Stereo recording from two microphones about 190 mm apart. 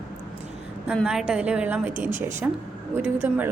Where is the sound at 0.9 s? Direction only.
5° right (ahead or behind).